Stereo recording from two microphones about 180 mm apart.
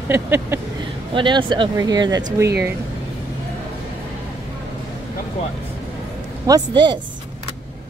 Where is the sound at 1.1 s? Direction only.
25° right (ahead or behind).